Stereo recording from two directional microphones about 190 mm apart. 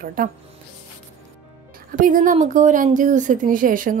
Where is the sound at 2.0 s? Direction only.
45° right (ahead or behind).